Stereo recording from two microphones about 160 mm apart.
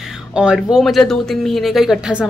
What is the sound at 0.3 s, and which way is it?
Speech, 5° right (ahead or behind).